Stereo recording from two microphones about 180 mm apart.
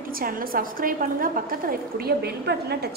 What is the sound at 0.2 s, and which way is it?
A woman's voice, 55° right (ahead or behind).